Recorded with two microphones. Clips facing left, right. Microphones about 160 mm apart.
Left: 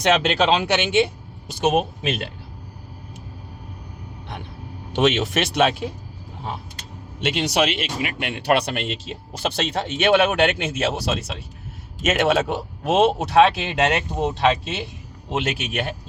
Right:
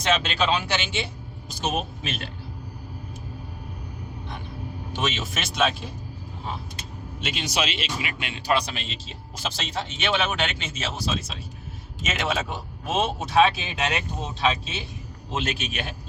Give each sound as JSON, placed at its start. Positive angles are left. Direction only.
{"t": 0.0, "sound": "a man's voice", "side_deg": 70}
{"t": 4.9, "sound": "a man's voice", "side_deg": 70}
{"t": 7.2, "sound": "a man's voice", "side_deg": 65}